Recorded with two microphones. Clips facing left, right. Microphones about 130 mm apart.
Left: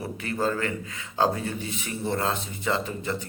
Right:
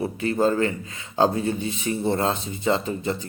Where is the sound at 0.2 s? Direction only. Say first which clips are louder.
Right 6 dB; 30° right (ahead or behind).